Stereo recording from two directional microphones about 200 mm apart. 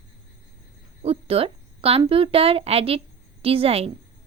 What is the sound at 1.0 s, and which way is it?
A woman's voice, 30° right (ahead or behind).